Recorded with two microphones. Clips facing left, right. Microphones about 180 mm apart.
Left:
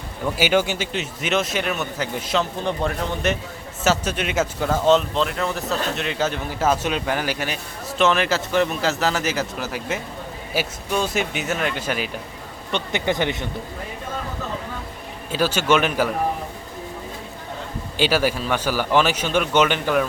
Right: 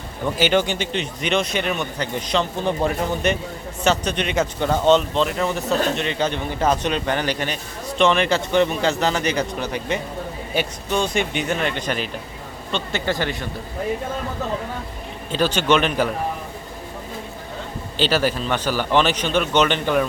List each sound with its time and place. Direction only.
0.3 s speech: 10° left (ahead or behind)
12.7 s speech: 15° left (ahead or behind)
15.3 s a man's voice: 10° left (ahead or behind)
17.9 s a man's voice: 10° left (ahead or behind)